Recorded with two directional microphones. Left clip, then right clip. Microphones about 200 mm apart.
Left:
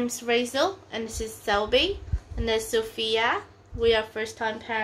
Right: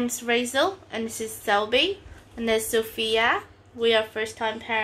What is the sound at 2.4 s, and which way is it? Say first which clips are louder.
A woman's voice: right 2 dB; 25° right (ahead or behind).